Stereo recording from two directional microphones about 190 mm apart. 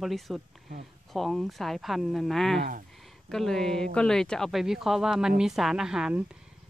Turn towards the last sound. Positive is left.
turn(degrees=-5)  # may be behind; listen again after turning